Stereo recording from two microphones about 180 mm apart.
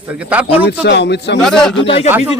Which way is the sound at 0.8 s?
70° left (ahead or behind).